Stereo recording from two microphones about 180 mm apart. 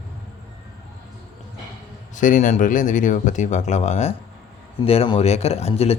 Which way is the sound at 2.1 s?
45° left (ahead or behind).